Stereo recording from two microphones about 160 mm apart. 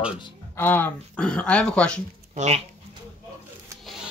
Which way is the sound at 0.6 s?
10° left (ahead or behind).